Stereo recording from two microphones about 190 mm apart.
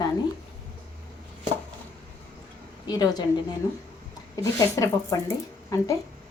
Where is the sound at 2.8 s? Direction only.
20° left (ahead or behind).